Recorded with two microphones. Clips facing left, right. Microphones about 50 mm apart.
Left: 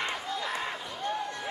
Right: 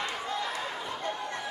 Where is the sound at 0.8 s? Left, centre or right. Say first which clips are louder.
Left 1 dB; right.